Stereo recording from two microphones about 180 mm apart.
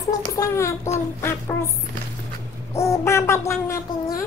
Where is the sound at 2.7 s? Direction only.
15° left (ahead or behind).